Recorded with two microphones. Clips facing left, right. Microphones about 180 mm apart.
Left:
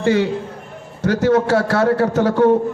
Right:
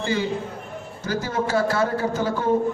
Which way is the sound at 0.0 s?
70° left (ahead or behind).